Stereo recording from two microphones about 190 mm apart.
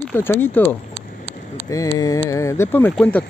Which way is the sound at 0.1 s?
10° left (ahead or behind).